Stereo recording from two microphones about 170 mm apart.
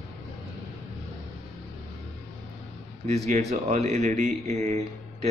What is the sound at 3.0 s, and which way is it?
Speech, 40° right (ahead or behind).